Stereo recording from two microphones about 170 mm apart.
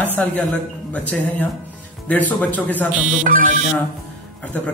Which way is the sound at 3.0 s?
50° right (ahead or behind).